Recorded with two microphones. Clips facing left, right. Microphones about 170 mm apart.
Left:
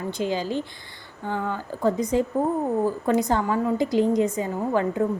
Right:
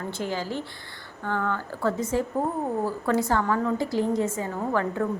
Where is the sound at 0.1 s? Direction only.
20° left (ahead or behind).